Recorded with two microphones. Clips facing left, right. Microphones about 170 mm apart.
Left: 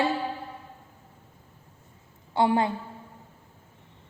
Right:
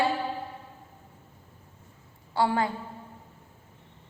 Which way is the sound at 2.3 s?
20° left (ahead or behind).